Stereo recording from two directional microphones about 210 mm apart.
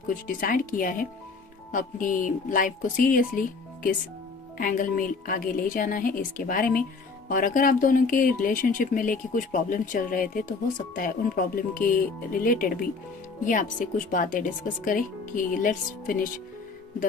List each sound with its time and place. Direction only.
0.1 s speech: 40° left (ahead or behind)
4.5 s speech: 40° left (ahead or behind)